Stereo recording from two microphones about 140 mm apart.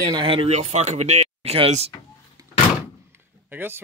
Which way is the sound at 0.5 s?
55° right (ahead or behind).